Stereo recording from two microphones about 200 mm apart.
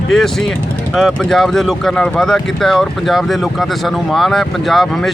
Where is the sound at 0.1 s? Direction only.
Centre (ahead or behind).